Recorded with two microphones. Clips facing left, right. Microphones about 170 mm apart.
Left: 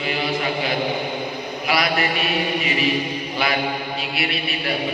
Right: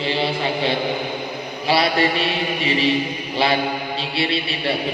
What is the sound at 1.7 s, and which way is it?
A man's voice, 30° right (ahead or behind).